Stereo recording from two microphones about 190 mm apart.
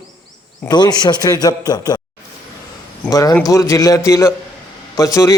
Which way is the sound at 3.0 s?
20° left (ahead or behind).